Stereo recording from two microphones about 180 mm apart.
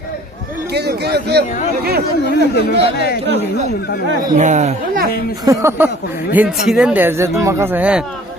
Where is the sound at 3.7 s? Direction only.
60° left (ahead or behind).